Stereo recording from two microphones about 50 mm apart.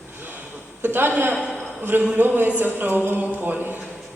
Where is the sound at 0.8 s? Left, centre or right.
Right.